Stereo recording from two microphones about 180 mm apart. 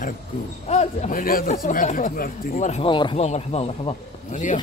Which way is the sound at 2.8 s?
25° left (ahead or behind).